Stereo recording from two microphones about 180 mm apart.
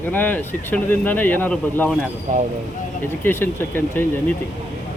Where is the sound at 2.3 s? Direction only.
45° right (ahead or behind).